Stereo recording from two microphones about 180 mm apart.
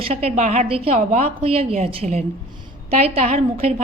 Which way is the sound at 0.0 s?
35° right (ahead or behind).